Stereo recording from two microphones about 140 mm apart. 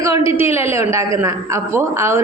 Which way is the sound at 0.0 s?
20° right (ahead or behind).